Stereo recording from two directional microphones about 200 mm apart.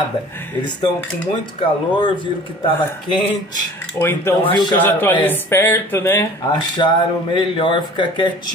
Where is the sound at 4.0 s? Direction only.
10° left (ahead or behind).